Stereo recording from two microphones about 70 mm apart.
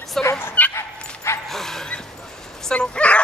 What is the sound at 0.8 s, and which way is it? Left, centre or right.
Dog, left.